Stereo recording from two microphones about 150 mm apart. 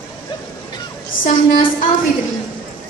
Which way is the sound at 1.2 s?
60° left (ahead or behind).